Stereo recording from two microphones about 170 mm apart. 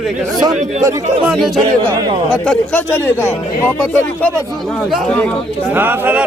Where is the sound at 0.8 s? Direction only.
20° right (ahead or behind).